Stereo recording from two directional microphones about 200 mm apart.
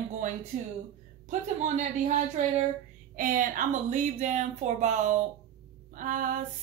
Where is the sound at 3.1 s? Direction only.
45° right (ahead or behind).